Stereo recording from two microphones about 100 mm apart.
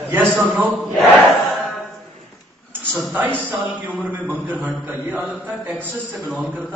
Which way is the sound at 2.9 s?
20° right (ahead or behind).